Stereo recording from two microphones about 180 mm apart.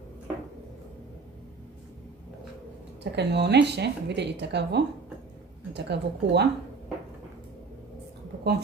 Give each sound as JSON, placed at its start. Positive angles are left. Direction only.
{"t": 3.0, "sound": "a woman's voice", "side_deg": -70}